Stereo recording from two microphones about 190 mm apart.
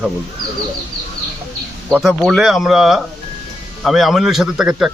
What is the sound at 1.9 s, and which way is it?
Speech, 5° right (ahead or behind).